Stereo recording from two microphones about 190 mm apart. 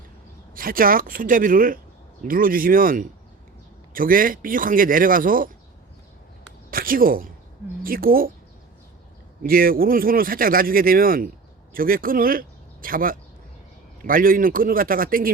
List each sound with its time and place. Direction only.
0.5 s speech: 50° right (ahead or behind)
6.7 s speech: 50° right (ahead or behind)
9.4 s speech: 50° right (ahead or behind)